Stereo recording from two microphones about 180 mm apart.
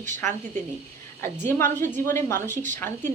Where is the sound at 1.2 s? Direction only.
10° left (ahead or behind).